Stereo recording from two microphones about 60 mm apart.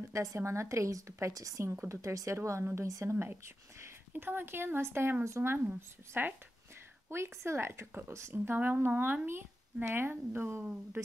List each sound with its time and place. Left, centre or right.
0.1 s a woman's voice: right
8.5 s speech: right